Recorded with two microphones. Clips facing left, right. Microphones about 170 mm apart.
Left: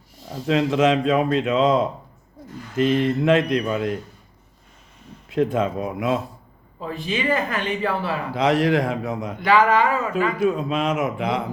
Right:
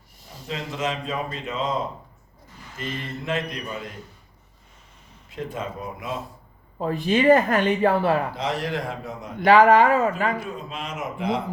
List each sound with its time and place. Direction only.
0.4 s speech: 80° left
5.3 s speech: 85° left
6.7 s speech: 45° right (ahead or behind)
8.4 s speech: 80° left
9.4 s speech: 40° right (ahead or behind)
10.4 s speech: 90° left